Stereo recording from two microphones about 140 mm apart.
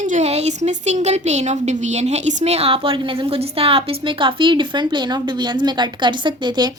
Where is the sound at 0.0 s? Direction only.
55° right (ahead or behind).